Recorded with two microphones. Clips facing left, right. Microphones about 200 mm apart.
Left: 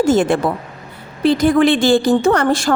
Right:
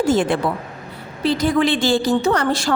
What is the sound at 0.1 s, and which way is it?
A woman's voice, 45° left (ahead or behind).